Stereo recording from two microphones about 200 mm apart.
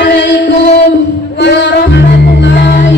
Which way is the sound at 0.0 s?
60° left (ahead or behind).